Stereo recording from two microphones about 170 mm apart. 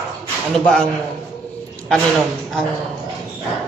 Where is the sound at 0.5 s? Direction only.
5° left (ahead or behind).